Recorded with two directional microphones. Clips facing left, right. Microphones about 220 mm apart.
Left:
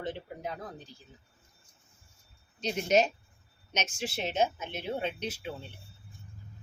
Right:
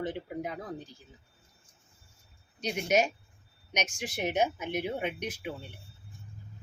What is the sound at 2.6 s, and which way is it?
A woman's voice, 10° right (ahead or behind).